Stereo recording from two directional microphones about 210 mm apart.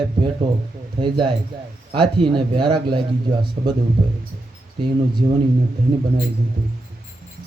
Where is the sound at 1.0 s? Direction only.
20° right (ahead or behind).